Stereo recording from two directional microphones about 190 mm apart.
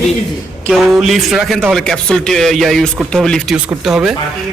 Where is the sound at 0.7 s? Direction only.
5° right (ahead or behind).